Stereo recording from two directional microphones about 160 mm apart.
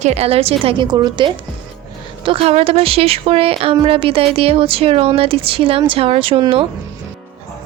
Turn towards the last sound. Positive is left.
turn(degrees=-35)  # may be behind; listen again after turning